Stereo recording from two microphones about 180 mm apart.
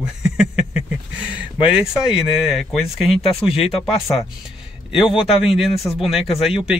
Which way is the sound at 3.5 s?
35° left (ahead or behind).